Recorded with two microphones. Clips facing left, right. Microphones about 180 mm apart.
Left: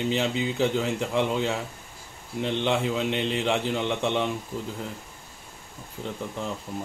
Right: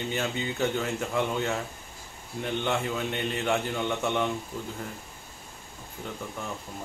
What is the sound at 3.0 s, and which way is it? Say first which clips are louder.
Speech: left 4 dB; 90° left.